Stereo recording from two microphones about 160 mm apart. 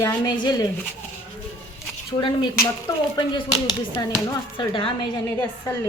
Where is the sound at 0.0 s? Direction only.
25° left (ahead or behind).